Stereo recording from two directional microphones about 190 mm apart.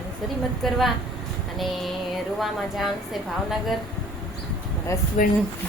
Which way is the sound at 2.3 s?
Centre (ahead or behind).